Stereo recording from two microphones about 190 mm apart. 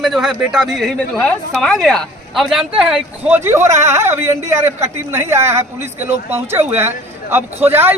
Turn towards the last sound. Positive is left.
turn(degrees=-10)  # may be behind; listen again after turning